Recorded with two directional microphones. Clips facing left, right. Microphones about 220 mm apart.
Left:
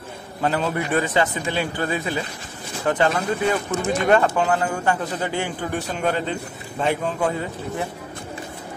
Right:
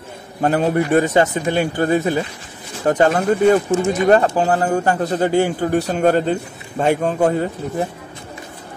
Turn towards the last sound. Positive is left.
turn(degrees=-40)  # may be behind; listen again after turning